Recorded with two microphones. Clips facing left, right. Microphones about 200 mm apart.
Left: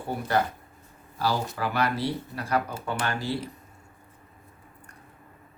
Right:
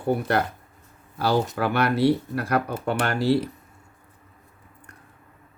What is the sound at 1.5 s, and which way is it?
Speech, 65° right (ahead or behind).